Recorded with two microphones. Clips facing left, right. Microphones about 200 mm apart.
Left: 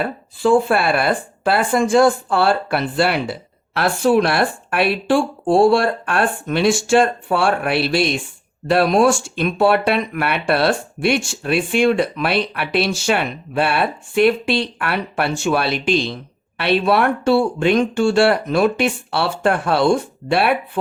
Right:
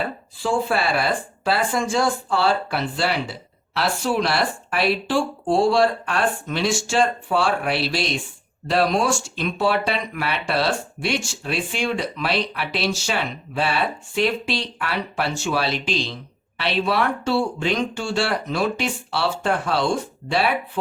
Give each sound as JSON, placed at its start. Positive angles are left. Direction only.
{"t": 0.3, "sound": "speech", "side_deg": 55}